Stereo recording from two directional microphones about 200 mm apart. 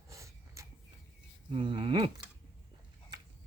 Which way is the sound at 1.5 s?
25° right (ahead or behind).